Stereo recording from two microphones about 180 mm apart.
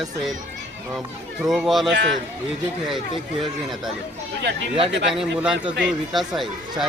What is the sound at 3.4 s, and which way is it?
Speech, centre (ahead or behind).